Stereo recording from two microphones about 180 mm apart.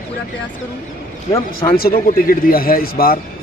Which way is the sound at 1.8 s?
55° left (ahead or behind).